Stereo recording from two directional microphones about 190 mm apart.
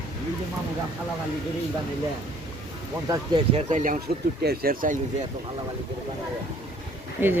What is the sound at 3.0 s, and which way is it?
Speech, 15° right (ahead or behind).